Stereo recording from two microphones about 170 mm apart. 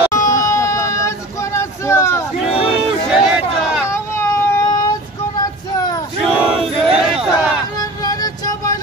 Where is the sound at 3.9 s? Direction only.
15° left (ahead or behind).